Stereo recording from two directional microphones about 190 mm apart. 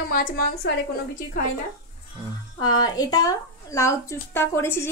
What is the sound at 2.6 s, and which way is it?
Speech, 20° left (ahead or behind).